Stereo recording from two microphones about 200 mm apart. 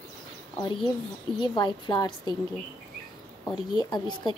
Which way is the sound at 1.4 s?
25° left (ahead or behind).